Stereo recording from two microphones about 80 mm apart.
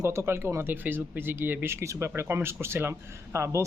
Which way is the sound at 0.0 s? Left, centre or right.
Right.